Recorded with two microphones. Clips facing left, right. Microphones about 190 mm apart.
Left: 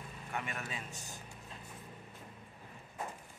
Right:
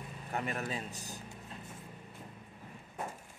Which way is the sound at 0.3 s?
35° right (ahead or behind).